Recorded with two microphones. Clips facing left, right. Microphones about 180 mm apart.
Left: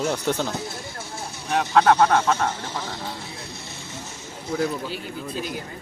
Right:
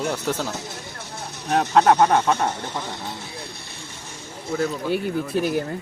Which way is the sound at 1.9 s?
15° right (ahead or behind).